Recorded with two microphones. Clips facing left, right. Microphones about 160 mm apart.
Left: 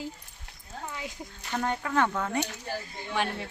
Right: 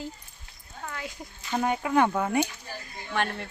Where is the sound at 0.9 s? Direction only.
20° left (ahead or behind).